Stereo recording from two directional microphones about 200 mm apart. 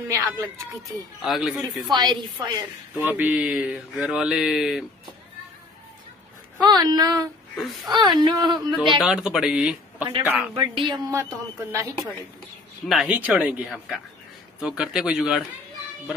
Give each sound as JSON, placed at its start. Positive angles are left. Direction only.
{"t": 0.1, "sound": "speech", "side_deg": -15}
{"t": 1.2, "sound": "mantra", "side_deg": 0}
{"t": 1.9, "sound": "speech", "side_deg": -20}
{"t": 3.0, "sound": "mantra", "side_deg": -10}
{"t": 6.6, "sound": "speech", "side_deg": -20}
{"t": 7.5, "sound": "mantra", "side_deg": 0}
{"t": 7.9, "sound": "speech", "side_deg": -20}
{"t": 8.7, "sound": "mantra", "side_deg": 0}
{"t": 10.5, "sound": "speech", "side_deg": -25}
{"t": 11.1, "sound": "speech", "side_deg": -15}
{"t": 12.8, "sound": "mantra", "side_deg": -5}